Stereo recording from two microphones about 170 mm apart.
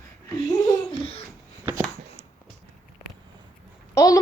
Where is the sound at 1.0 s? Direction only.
35° left (ahead or behind).